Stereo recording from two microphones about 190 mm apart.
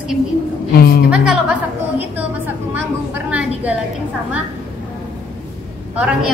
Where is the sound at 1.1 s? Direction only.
5° right (ahead or behind).